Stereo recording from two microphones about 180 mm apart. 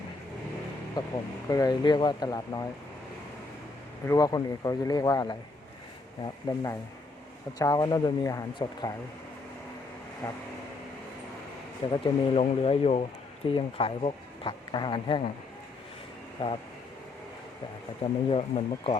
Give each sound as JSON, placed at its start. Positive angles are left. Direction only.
{"t": 1.0, "sound": "speech", "side_deg": 25}
{"t": 4.0, "sound": "speech", "side_deg": 20}
{"t": 10.2, "sound": "vehicle", "side_deg": 15}
{"t": 11.9, "sound": "speech", "side_deg": 35}
{"t": 16.4, "sound": "speech", "side_deg": 30}
{"t": 18.3, "sound": "speech", "side_deg": 30}